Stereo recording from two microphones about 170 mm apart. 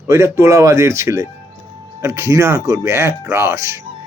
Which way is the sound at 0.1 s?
15° right (ahead or behind).